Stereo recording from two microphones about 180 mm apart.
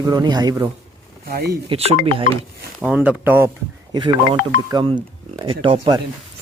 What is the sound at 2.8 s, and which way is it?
Speech, 10° right (ahead or behind).